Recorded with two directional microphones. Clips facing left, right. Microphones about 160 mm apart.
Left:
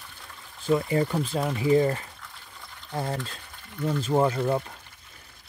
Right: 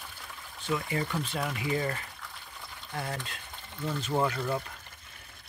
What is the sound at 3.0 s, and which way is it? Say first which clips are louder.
Speech: left 6 dB; 30° left (ahead or behind).